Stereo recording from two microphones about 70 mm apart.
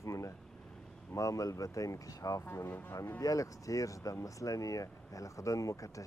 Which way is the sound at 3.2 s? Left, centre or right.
Left.